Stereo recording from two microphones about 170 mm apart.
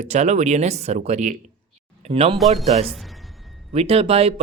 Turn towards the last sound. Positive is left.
turn(degrees=-35)  # may be behind; listen again after turning